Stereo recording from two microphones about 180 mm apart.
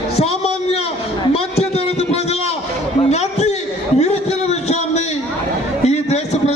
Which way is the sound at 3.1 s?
40° left (ahead or behind).